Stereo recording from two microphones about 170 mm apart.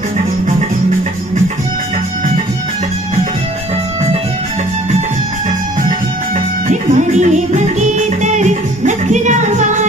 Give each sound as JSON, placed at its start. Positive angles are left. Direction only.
{"t": 6.7, "sound": "music", "side_deg": -45}